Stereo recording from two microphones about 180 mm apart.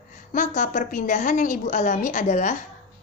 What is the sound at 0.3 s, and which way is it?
A woman's voice, 45° left (ahead or behind).